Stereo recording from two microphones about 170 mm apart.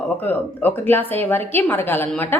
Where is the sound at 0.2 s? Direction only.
10° left (ahead or behind).